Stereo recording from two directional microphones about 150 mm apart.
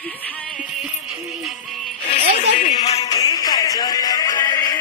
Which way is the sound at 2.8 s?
45° left (ahead or behind).